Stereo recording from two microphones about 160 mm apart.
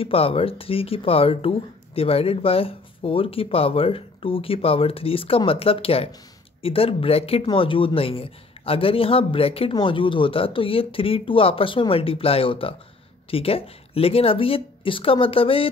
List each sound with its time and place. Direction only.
0.0 s speech: 35° left (ahead or behind)